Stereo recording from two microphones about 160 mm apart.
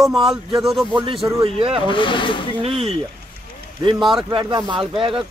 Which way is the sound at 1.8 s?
30° left (ahead or behind).